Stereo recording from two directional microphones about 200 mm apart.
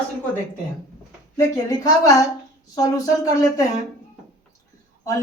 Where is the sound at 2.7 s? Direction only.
15° left (ahead or behind).